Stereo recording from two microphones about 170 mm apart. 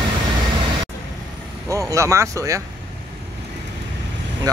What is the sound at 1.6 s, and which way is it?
Speech, 20° right (ahead or behind).